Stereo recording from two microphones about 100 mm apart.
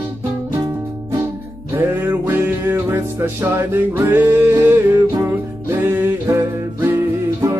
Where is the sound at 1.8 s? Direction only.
20° right (ahead or behind).